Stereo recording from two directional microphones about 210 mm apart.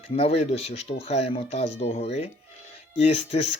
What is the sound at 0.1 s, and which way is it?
Speech, 30° left (ahead or behind).